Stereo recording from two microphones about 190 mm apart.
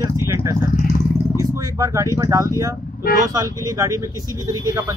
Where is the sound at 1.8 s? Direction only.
15° right (ahead or behind).